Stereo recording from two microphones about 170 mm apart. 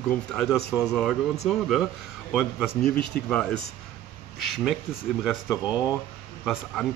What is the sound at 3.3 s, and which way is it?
A man's voice, 5° left (ahead or behind).